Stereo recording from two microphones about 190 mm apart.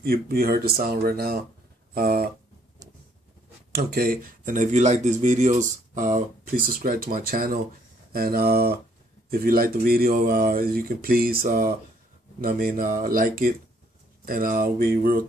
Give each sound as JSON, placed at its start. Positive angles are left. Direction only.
{"t": 0.0, "sound": "speech", "side_deg": -50}
{"t": 2.8, "sound": "a sound", "side_deg": -20}
{"t": 3.7, "sound": "speech", "side_deg": -50}